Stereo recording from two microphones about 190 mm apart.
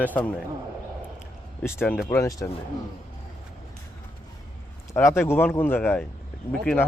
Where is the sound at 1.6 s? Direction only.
10° left (ahead or behind).